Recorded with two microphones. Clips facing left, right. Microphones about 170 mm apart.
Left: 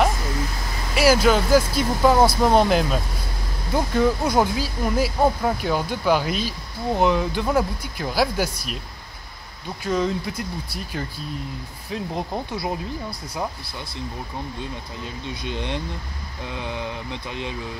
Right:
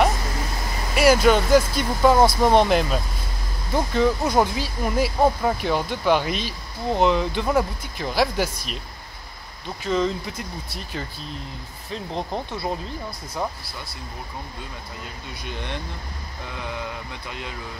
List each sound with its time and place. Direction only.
0.9 s speech: 5° left (ahead or behind)
9.8 s speech: 5° left (ahead or behind)
11.9 s speech: 5° left (ahead or behind)
15.4 s speech: 20° left (ahead or behind)